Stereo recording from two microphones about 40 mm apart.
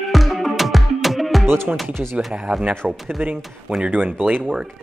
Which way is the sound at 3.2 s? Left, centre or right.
Right.